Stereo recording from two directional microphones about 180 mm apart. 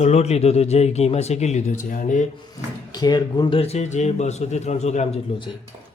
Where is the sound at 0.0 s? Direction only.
35° left (ahead or behind).